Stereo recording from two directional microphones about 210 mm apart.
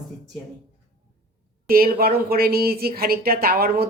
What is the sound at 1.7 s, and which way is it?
Speech, 45° right (ahead or behind).